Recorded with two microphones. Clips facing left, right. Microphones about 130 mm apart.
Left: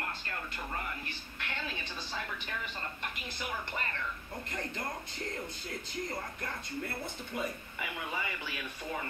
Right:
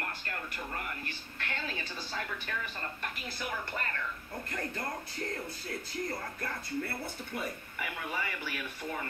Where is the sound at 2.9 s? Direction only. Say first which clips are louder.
Right 1 dB; 20° left (ahead or behind).